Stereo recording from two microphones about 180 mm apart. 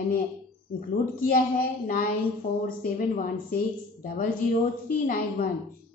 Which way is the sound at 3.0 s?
50° left (ahead or behind).